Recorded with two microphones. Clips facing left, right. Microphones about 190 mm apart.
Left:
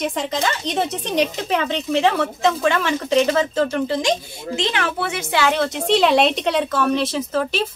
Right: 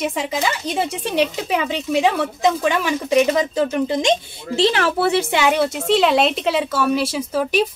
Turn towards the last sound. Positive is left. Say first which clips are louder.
# right 2 dB
turn(degrees=-10)  # may be behind; listen again after turning